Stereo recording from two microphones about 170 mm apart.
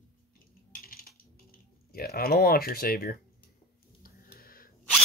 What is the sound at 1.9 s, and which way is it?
Speech, 65° left (ahead or behind).